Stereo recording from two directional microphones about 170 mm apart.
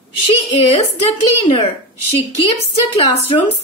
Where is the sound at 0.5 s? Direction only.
40° left (ahead or behind).